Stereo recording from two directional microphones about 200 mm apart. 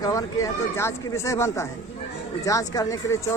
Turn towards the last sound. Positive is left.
turn(degrees=15)  # may be behind; listen again after turning